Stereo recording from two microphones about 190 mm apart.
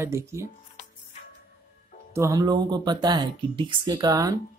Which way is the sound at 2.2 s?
15° right (ahead or behind).